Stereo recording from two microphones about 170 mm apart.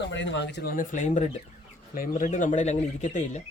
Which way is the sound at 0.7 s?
50° left (ahead or behind).